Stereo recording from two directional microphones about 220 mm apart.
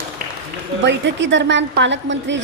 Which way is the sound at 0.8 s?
55° right (ahead or behind).